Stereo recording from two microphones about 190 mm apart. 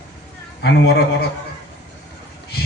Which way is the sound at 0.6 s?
60° left (ahead or behind).